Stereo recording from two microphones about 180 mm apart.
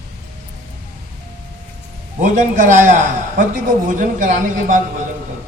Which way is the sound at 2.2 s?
45° right (ahead or behind).